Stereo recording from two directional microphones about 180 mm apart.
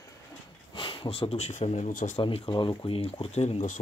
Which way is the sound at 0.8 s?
30° left (ahead or behind).